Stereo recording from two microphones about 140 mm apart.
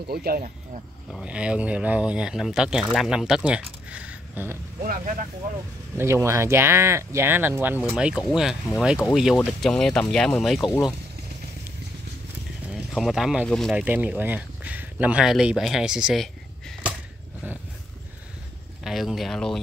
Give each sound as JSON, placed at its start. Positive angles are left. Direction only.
{"t": 0.1, "sound": "speech", "side_deg": -90}
{"t": 1.2, "sound": "speech", "side_deg": -10}
{"t": 4.8, "sound": "speech", "side_deg": -80}
{"t": 5.9, "sound": "speech", "side_deg": -20}
{"t": 7.9, "sound": "speech", "side_deg": 0}
{"t": 12.9, "sound": "speech", "side_deg": 0}
{"t": 13.7, "sound": "speech", "side_deg": -10}
{"t": 18.9, "sound": "speech", "side_deg": 0}